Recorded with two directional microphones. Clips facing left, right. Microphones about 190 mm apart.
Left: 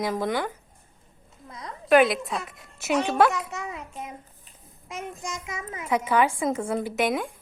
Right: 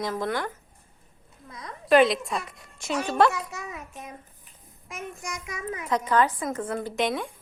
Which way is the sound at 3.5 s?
25° left (ahead or behind).